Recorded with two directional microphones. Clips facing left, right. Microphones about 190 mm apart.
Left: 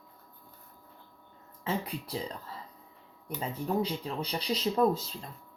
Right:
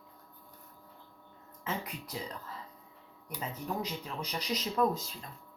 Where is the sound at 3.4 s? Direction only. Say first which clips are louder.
Left 6 dB; 30° left (ahead or behind).